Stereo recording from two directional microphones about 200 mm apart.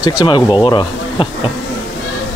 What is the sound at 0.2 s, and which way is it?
Speech, 20° left (ahead or behind).